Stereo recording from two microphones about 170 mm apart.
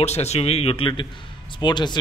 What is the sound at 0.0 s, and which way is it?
A man's voice, 40° left (ahead or behind).